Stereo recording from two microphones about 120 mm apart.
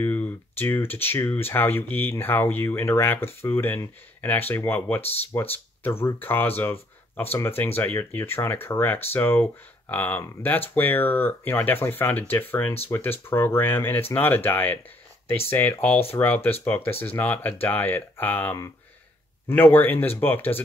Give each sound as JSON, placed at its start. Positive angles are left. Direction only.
{"t": 0.0, "sound": "speech", "side_deg": 15}